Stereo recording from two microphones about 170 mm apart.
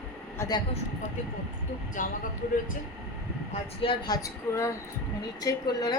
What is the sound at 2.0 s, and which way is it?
Speech, 50° left (ahead or behind).